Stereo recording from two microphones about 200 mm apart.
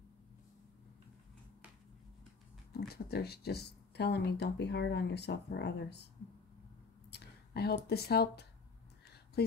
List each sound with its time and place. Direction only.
2.9 s speech: 50° left (ahead or behind)
7.1 s speech: 55° left (ahead or behind)